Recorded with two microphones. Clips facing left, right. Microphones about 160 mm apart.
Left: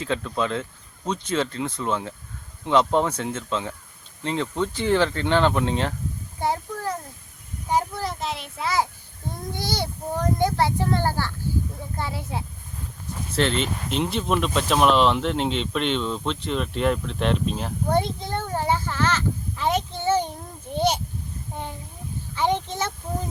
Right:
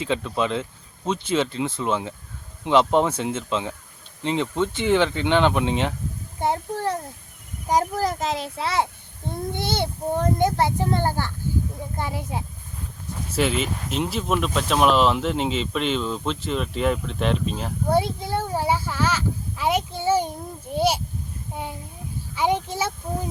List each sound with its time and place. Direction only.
0.0 s speech: 20° right (ahead or behind)
6.4 s a sound: 25° right (ahead or behind)
7.7 s a child's voice: 40° right (ahead or behind)
8.5 s speech: 30° right (ahead or behind); by 22.9 s 10° right (ahead or behind)